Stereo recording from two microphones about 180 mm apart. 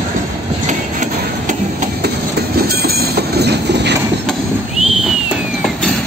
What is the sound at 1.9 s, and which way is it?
Train, 60° right (ahead or behind).